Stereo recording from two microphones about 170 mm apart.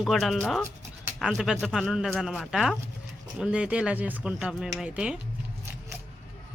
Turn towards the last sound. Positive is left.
turn(degrees=-5)  # may be behind; listen again after turning